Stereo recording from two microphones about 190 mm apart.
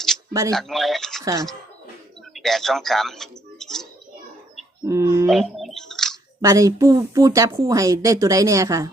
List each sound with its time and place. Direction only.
0.5 s speech: centre (ahead or behind)
1.2 s speech: 15° right (ahead or behind)
2.3 s speech: centre (ahead or behind)
4.9 s speech: 15° right (ahead or behind)
5.3 s a sound: centre (ahead or behind)
6.4 s speech: 15° right (ahead or behind)